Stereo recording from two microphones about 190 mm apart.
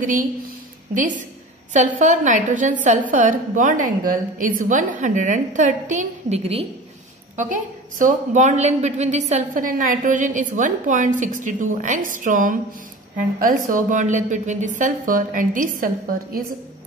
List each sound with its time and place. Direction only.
0.9 s a woman's voice: 45° right (ahead or behind)
8.0 s a woman's voice: 40° right (ahead or behind)